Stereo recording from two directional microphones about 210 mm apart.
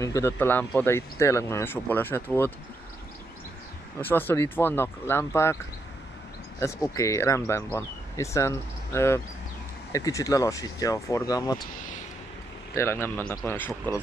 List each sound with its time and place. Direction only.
0.0 s speech: 15° left (ahead or behind)
4.0 s speech: 10° left (ahead or behind)
6.6 s speech: 15° left (ahead or behind)
12.7 s speech: 10° left (ahead or behind)